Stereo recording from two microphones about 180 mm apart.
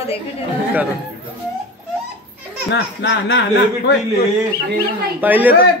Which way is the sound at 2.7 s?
75° left (ahead or behind).